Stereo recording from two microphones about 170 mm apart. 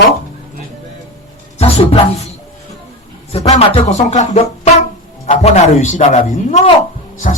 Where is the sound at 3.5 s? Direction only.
40° left (ahead or behind).